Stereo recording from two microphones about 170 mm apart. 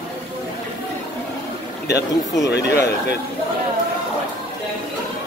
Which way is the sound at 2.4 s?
75° left (ahead or behind).